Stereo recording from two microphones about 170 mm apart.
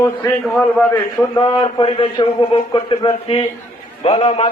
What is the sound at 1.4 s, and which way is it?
A man's voice, 30° left (ahead or behind).